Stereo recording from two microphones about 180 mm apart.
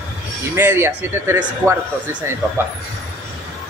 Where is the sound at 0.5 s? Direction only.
10° right (ahead or behind).